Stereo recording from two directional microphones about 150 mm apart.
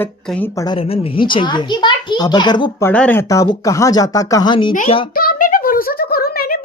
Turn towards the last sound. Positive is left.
turn(degrees=85)